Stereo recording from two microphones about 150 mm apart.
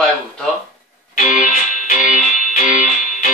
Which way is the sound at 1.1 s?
60° left (ahead or behind).